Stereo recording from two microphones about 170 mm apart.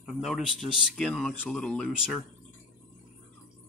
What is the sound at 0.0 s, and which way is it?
Speech, centre (ahead or behind).